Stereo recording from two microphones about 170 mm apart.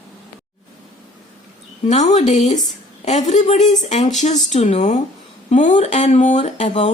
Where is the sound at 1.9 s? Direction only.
40° left (ahead or behind).